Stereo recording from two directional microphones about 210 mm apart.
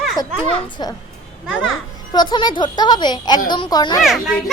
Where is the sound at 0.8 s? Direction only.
20° left (ahead or behind).